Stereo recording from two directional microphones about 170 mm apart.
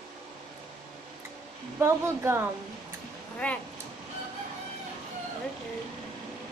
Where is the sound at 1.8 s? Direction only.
15° right (ahead or behind).